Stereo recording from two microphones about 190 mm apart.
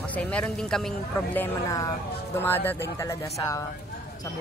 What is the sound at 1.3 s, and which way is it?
Speech, 15° left (ahead or behind).